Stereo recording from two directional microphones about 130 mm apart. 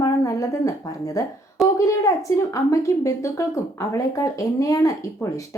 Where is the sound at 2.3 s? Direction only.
25° left (ahead or behind).